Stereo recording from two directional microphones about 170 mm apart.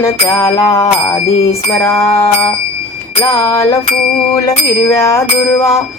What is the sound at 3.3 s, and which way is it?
Speech, 20° left (ahead or behind).